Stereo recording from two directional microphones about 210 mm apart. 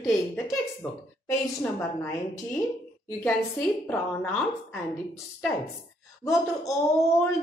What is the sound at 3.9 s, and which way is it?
Speech, 5° left (ahead or behind).